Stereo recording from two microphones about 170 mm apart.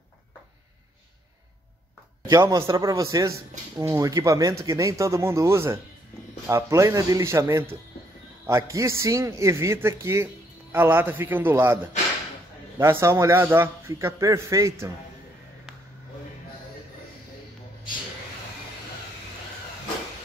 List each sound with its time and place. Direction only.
2.2 s a man's voice: 20° right (ahead or behind)